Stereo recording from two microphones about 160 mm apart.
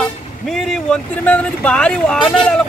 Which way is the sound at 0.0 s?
Centre (ahead or behind).